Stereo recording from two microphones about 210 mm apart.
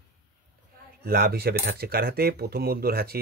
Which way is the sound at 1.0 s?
50° right (ahead or behind).